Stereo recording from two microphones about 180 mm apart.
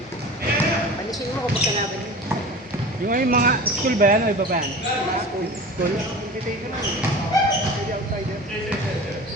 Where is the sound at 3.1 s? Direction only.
50° right (ahead or behind).